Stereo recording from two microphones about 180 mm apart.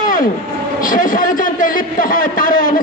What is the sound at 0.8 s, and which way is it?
A man's voice, 50° left (ahead or behind).